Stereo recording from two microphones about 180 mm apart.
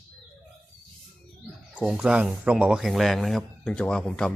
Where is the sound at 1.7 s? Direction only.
5° right (ahead or behind).